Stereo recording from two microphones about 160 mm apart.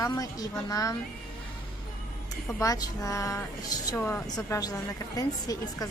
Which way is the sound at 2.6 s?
20° left (ahead or behind).